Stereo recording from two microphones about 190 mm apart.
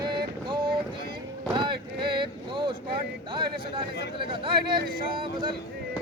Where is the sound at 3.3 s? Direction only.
25° right (ahead or behind).